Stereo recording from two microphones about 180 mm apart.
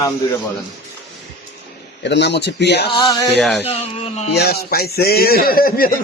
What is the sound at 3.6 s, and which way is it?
Speech, 35° left (ahead or behind).